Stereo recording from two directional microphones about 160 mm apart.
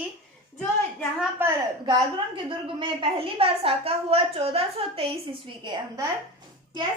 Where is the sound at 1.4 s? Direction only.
15° right (ahead or behind).